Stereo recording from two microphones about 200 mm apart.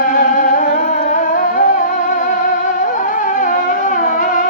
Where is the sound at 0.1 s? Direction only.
45° left (ahead or behind).